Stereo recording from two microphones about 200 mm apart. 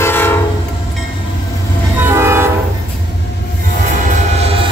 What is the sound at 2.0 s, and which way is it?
Train, 10° right (ahead or behind).